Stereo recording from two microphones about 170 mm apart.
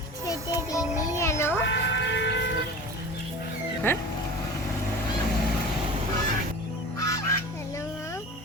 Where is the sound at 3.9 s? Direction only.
10° left (ahead or behind).